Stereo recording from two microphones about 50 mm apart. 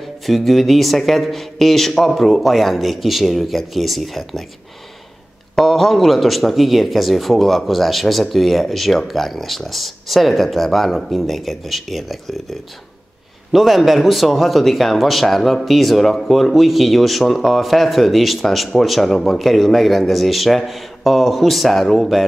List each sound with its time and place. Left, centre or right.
0.3 s speech: centre
5.6 s speech: centre